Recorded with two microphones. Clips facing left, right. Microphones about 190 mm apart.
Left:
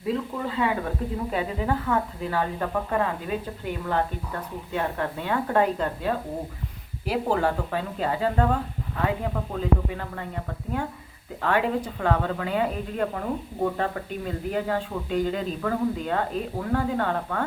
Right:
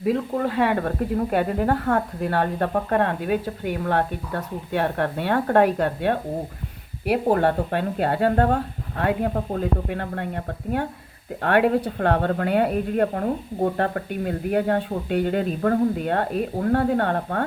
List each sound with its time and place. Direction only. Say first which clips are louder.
0.0 s speech: right 5 dB; 70° right (ahead or behind)